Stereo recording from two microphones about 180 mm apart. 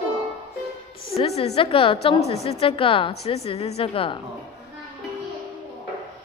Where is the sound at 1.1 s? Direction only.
35° left (ahead or behind).